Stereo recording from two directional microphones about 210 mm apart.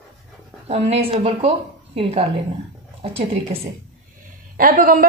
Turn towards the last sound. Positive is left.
turn(degrees=-40)  # may be behind; listen again after turning